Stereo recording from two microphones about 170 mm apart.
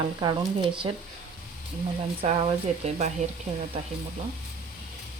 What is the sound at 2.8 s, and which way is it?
Speech, 40° right (ahead or behind).